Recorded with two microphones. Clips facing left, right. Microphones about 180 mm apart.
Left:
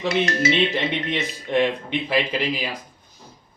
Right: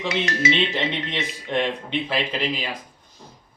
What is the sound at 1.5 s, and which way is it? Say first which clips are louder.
Speech: left 4 dB; 10° left (ahead or behind).